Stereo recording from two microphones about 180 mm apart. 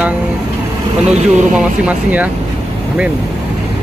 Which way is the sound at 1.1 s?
40° right (ahead or behind).